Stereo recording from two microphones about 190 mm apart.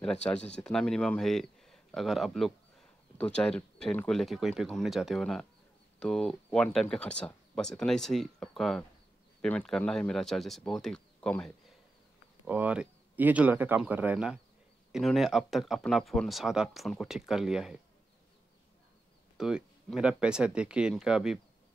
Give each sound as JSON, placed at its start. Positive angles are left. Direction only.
{"t": 0.0, "sound": "speech", "side_deg": 5}
{"t": 12.4, "sound": "speech", "side_deg": -5}
{"t": 19.3, "sound": "speech", "side_deg": -5}